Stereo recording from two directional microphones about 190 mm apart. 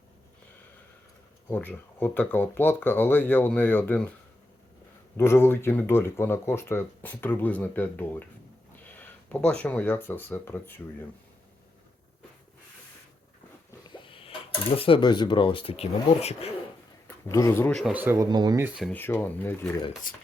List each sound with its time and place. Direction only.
1.5 s speech: 10° left (ahead or behind)
5.1 s speech: 15° left (ahead or behind)
14.0 s a sound: 30° left (ahead or behind)
14.8 s speech: 30° left (ahead or behind)
17.2 s speech: 15° left (ahead or behind)
17.9 s speech: 10° right (ahead or behind)
18.8 s speech: 10° left (ahead or behind)
20.1 s speech: 45° left (ahead or behind)